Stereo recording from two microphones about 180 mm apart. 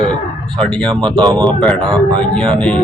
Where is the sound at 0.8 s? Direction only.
25° right (ahead or behind).